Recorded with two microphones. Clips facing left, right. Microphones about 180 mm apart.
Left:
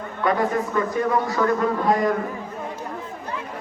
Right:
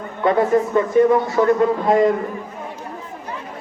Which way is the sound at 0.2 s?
25° right (ahead or behind).